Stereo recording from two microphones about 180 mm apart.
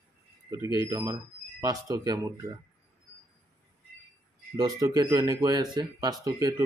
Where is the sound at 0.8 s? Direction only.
20° right (ahead or behind).